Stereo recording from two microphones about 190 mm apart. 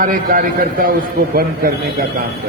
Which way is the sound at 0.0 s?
45° right (ahead or behind).